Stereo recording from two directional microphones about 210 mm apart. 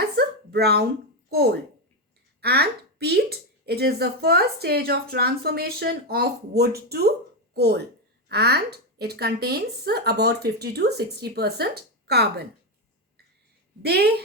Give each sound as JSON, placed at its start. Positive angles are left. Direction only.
{"t": 0.2, "sound": "a sound", "side_deg": -50}
{"t": 1.3, "sound": "speech", "side_deg": -50}
{"t": 13.8, "sound": "speech", "side_deg": -50}